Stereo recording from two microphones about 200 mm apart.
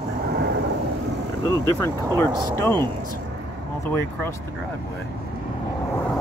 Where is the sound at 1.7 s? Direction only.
15° left (ahead or behind).